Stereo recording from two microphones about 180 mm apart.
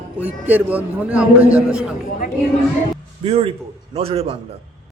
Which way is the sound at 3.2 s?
35° right (ahead or behind).